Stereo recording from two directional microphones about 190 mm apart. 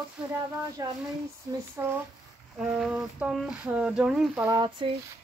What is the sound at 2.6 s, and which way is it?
Speech, 5° right (ahead or behind).